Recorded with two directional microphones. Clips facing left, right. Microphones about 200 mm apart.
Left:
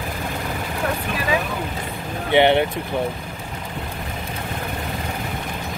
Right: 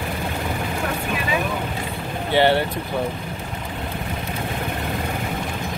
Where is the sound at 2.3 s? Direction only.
20° left (ahead or behind).